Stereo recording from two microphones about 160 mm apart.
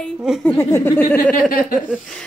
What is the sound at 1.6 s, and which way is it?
Speech, centre (ahead or behind).